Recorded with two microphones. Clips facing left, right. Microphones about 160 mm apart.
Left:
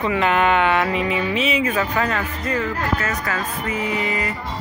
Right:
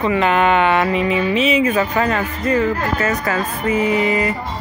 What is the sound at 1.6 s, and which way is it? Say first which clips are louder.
Music: right 4 dB; 10° right (ahead or behind).